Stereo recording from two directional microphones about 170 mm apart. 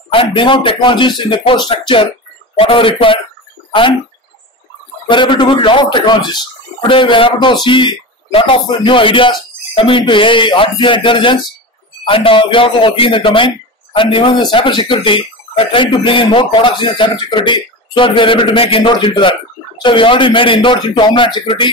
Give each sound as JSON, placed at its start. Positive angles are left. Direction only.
{"t": 0.1, "sound": "a man's voice", "side_deg": 30}
{"t": 5.1, "sound": "a man's voice", "side_deg": 30}